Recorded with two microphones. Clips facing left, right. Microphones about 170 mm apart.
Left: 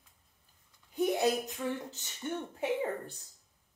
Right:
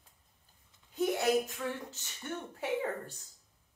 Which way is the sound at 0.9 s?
15° left (ahead or behind).